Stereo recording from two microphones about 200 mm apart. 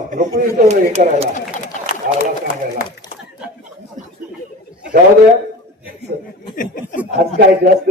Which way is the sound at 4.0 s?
40° right (ahead or behind).